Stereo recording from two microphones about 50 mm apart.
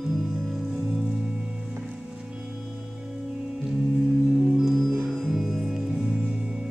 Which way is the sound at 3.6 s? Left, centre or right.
Centre.